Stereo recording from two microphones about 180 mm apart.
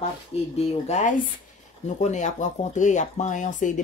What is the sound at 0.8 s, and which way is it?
Speech, 40° left (ahead or behind).